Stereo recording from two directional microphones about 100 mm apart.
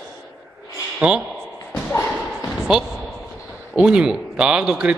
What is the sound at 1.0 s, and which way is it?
Speech, 10° right (ahead or behind).